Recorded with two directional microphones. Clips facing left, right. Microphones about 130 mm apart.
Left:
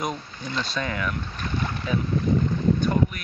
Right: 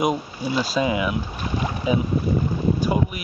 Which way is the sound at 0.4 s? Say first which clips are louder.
Right 6 dB; 5° right (ahead or behind).